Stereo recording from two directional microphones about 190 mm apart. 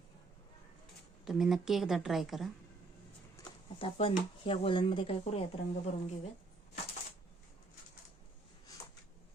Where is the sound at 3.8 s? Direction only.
25° left (ahead or behind).